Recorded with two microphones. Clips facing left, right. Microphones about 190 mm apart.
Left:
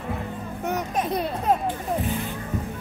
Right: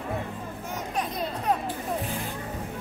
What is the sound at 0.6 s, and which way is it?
Music, 65° left (ahead or behind).